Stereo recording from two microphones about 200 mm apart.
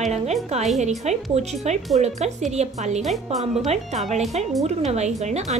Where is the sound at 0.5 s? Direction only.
35° right (ahead or behind).